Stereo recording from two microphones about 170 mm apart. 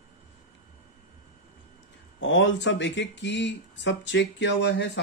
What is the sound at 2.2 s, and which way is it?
Speech, 90° left.